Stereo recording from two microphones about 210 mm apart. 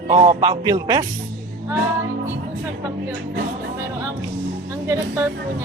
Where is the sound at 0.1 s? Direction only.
20° right (ahead or behind).